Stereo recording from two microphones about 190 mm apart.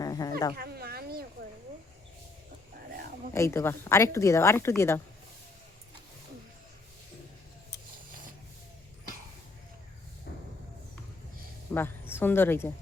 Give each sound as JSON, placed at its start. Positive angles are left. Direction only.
{"t": 0.0, "sound": "dog", "side_deg": 20}
{"t": 0.5, "sound": "a sound", "side_deg": -55}
{"t": 3.3, "sound": "a woman's voice", "side_deg": 15}
{"t": 11.7, "sound": "a woman's voice", "side_deg": 10}